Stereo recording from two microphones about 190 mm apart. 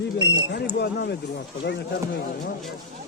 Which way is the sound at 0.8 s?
60° left (ahead or behind).